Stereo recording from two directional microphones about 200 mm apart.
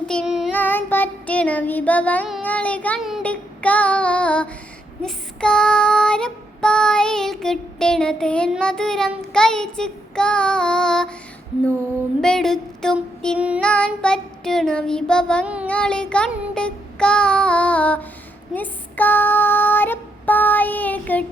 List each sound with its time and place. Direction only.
0.1 s child singing: centre (ahead or behind)
0.5 s child singing: 10° left (ahead or behind)
12.2 s child singing: 5° left (ahead or behind)
18.5 s female singing: 10° left (ahead or behind)